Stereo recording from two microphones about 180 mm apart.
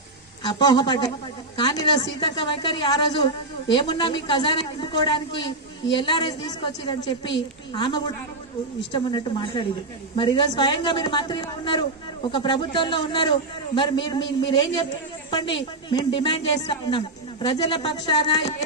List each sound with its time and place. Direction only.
0.4 s a man's voice: 25° left (ahead or behind)